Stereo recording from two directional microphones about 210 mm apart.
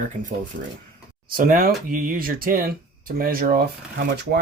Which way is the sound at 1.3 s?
45° right (ahead or behind).